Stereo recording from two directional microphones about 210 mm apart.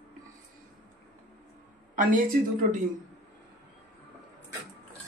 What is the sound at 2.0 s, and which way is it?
Speech, 40° right (ahead or behind).